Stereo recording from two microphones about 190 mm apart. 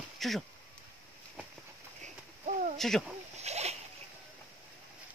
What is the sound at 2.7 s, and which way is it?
Speech, centre (ahead or behind).